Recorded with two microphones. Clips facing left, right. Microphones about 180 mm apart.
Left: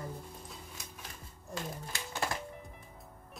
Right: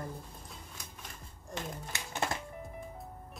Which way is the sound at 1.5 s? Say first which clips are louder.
Even; 20° right (ahead or behind).